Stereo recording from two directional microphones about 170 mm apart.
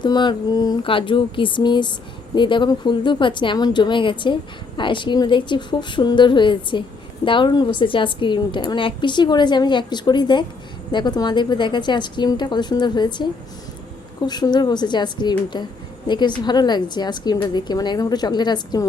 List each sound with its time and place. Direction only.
0.0 s a woman's voice: 25° left (ahead or behind)
14.3 s a woman's voice: 25° left (ahead or behind)